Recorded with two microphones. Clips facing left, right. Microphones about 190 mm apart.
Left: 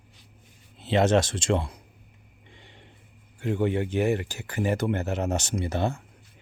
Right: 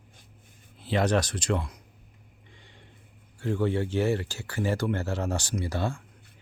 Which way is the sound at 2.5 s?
25° left (ahead or behind).